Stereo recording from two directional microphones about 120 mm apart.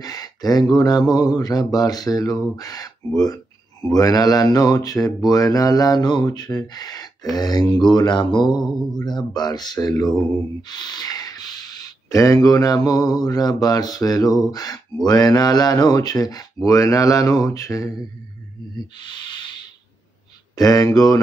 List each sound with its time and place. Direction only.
0.0 s speech: 30° left (ahead or behind)
3.9 s speech: 30° left (ahead or behind)
18.9 s speech: 40° left (ahead or behind)
20.5 s speech: 30° left (ahead or behind)